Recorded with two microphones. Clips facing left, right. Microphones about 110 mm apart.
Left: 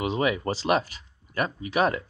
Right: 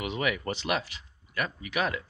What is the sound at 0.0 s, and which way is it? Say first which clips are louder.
Speech: left 5 dB; 30° left (ahead or behind).